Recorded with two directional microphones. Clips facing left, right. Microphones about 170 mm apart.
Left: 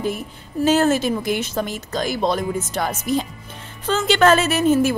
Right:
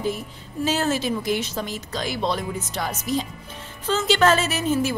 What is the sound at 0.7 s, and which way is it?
A woman's voice, 50° left (ahead or behind).